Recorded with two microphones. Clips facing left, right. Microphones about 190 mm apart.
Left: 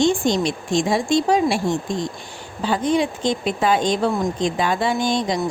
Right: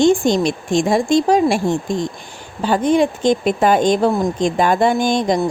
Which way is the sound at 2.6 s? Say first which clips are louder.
Right 5 dB; 50° right (ahead or behind).